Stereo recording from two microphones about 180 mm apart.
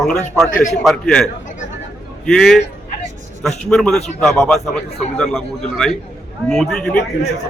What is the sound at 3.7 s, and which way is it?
A man's voice, 5° left (ahead or behind).